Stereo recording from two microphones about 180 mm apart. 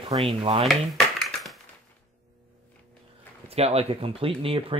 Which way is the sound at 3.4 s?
35° right (ahead or behind).